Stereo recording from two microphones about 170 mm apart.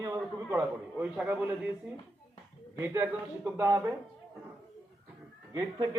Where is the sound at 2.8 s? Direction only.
15° right (ahead or behind).